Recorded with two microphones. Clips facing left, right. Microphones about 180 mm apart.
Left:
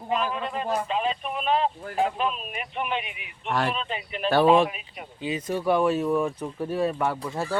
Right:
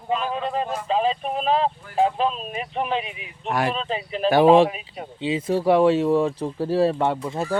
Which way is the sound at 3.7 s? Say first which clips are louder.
Right 5 dB; 35° right (ahead or behind).